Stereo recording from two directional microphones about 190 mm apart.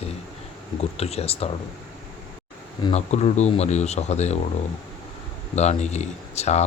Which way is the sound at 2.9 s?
35° left (ahead or behind).